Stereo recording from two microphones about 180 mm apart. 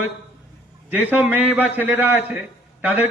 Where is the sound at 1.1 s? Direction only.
10° right (ahead or behind).